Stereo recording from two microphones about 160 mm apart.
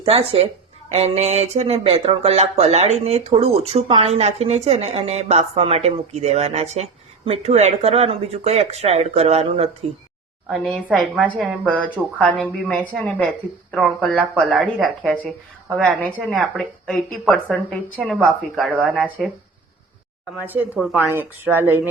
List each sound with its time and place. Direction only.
0.0 s speech: 40° right (ahead or behind)
10.5 s a woman's voice: centre (ahead or behind)
18.7 s speech: 10° right (ahead or behind)
20.4 s speech: 10° right (ahead or behind)